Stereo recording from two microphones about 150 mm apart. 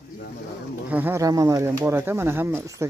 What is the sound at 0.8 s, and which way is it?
Speech, 10° right (ahead or behind).